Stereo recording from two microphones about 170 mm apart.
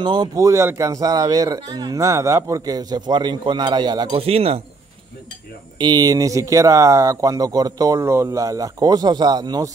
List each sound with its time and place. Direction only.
0.0 s speech: 25° right (ahead or behind)
5.8 s speech: 25° right (ahead or behind)